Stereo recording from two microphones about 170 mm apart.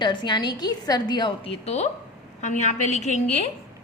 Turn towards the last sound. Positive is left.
turn(degrees=40)  # may be behind; listen again after turning